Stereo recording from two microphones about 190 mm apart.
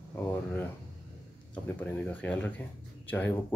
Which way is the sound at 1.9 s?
5° left (ahead or behind).